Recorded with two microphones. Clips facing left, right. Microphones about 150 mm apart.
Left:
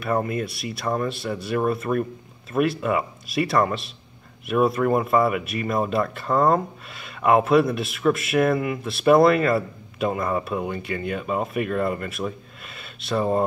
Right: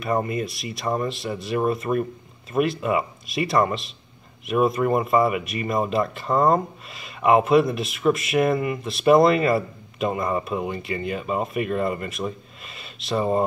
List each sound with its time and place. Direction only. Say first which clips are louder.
0.0 s speech: even; centre (ahead or behind)